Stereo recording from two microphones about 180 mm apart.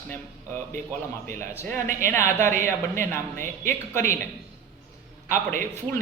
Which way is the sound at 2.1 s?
15° left (ahead or behind).